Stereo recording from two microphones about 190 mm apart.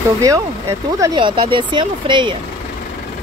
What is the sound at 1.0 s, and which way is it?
Speech, 25° right (ahead or behind).